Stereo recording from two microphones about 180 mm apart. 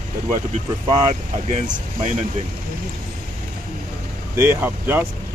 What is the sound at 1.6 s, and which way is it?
Speech, 45° right (ahead or behind).